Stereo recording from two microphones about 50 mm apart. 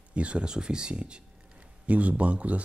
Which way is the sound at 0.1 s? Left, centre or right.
Right.